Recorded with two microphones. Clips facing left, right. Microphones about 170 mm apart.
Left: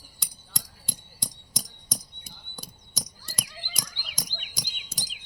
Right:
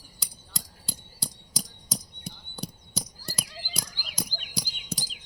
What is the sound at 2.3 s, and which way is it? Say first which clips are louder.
Horse: right 13 dB; 70° right (ahead or behind).